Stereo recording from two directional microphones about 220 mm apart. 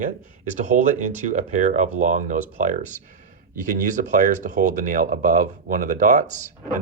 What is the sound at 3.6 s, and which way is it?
Speech, 35° right (ahead or behind).